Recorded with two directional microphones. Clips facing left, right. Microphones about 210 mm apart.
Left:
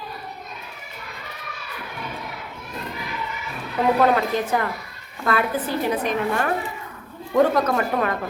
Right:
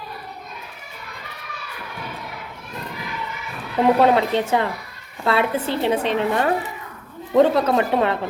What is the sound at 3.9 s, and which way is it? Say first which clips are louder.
A woman's voice: right 2 dB; 25° right (ahead or behind).